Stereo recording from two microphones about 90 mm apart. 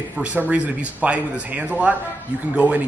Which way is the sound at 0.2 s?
15° right (ahead or behind).